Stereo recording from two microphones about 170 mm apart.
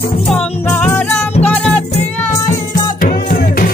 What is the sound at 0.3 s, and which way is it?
Music, 5° left (ahead or behind).